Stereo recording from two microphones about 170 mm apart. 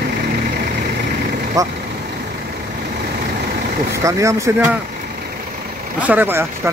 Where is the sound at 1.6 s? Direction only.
20° right (ahead or behind).